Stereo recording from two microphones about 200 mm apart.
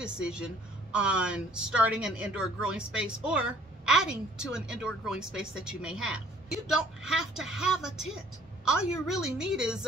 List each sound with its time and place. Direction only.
0.0 s a woman's voice: 5° right (ahead or behind)